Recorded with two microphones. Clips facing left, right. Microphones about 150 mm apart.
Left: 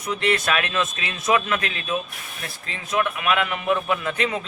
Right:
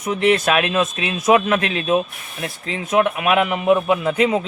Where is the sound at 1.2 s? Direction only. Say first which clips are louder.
Right 6 dB; 40° right (ahead or behind).